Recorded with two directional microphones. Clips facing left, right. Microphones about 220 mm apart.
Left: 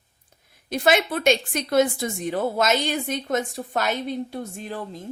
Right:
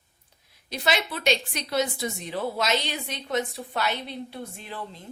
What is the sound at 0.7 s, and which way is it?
A woman's voice, 50° left (ahead or behind).